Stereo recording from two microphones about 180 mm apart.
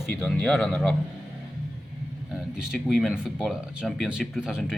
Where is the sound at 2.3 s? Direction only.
Centre (ahead or behind).